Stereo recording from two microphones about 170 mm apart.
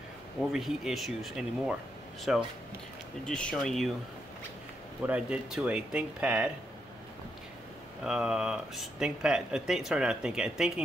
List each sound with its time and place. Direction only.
0.4 s speech: centre (ahead or behind)
3.3 s speech: 5° left (ahead or behind)
5.0 s speech: 5° right (ahead or behind)
8.0 s speech: 5° right (ahead or behind)